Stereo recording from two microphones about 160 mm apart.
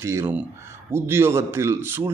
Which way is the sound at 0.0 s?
15° right (ahead or behind).